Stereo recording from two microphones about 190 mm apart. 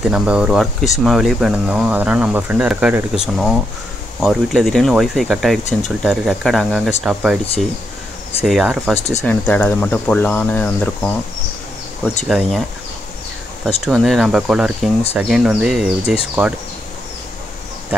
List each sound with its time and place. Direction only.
0.1 s speech: 5° right (ahead or behind)
8.5 s speech: centre (ahead or behind)
8.9 s speech: 35° left (ahead or behind)
9.2 s speech: 5° left (ahead or behind)
12.3 s speech: centre (ahead or behind)
13.8 s speech: centre (ahead or behind)